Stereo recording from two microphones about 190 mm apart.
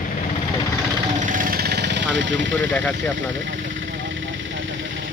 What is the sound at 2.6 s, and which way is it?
Speech, 5° left (ahead or behind).